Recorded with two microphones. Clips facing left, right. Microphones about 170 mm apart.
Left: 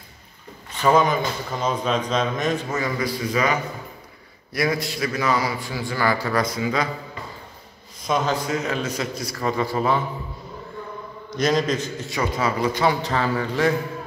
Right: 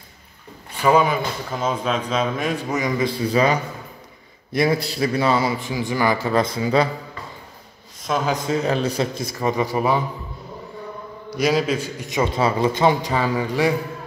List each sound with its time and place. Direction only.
0.7 s a man's voice: 10° right (ahead or behind); by 6.9 s 30° right (ahead or behind)
8.0 s a man's voice: centre (ahead or behind)
8.5 s a man's voice: 35° right (ahead or behind)
9.3 s speech: 20° right (ahead or behind)
11.3 s speech: 10° right (ahead or behind)